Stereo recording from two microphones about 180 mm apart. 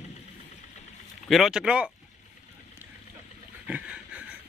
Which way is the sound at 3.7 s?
10° right (ahead or behind).